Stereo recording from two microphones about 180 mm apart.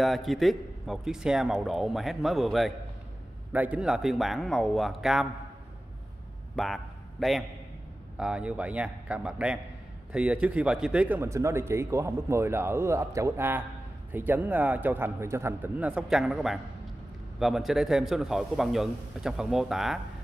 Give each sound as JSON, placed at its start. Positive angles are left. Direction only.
{"t": 0.0, "sound": "a man's voice", "side_deg": 0}
{"t": 6.5, "sound": "a man's voice", "side_deg": 0}